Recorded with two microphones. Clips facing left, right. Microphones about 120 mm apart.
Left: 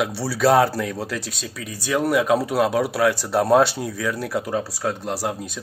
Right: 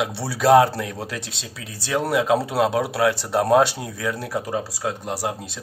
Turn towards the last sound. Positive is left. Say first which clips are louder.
# left 1 dB
turn(degrees=-20)  # may be behind; listen again after turning